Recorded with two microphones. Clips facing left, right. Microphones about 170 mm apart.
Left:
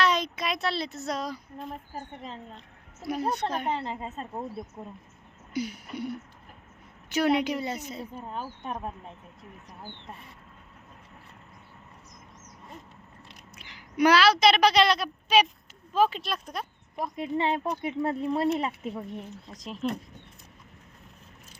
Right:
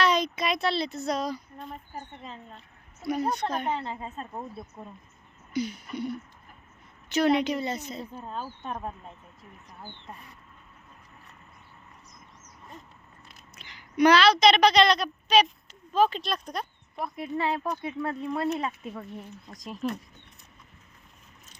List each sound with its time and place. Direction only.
0.0 s a woman's voice: centre (ahead or behind)
3.8 s speech: 25° left (ahead or behind)
4.2 s speech: 10° left (ahead or behind)
5.5 s a sound: 10° left (ahead or behind)
7.1 s speech: 10° left (ahead or behind)
13.6 s a woman's voice: 10° left (ahead or behind)
17.0 s speech: 25° left (ahead or behind)